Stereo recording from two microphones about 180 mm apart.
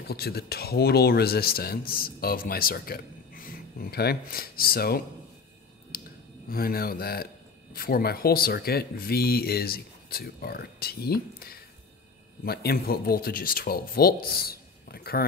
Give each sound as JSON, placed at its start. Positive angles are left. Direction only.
{"t": 0.0, "sound": "speech", "side_deg": 60}
{"t": 5.9, "sound": "a sound", "side_deg": 55}
{"t": 6.5, "sound": "speech", "side_deg": 55}